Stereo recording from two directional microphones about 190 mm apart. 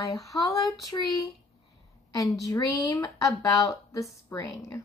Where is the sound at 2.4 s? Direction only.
20° left (ahead or behind).